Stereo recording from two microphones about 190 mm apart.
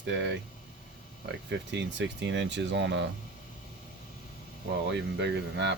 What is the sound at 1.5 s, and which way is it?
Speech, 70° right (ahead or behind).